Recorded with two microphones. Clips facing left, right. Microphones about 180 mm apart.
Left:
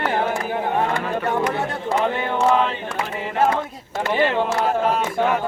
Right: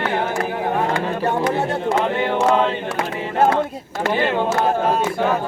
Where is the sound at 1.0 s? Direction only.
25° right (ahead or behind).